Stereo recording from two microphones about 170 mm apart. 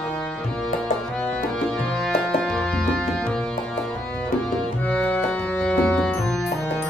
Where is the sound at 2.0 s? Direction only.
Centre (ahead or behind).